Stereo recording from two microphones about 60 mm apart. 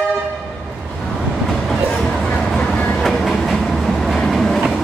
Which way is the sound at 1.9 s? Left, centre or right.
Centre.